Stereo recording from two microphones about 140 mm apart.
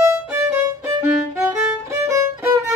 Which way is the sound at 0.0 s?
15° right (ahead or behind).